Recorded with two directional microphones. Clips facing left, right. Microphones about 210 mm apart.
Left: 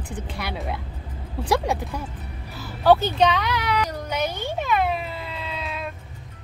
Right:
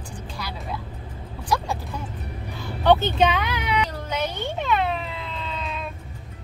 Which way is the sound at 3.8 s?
10° left (ahead or behind).